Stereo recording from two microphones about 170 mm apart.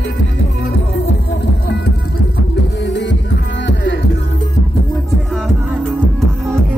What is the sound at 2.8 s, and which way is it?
Music, 90° left.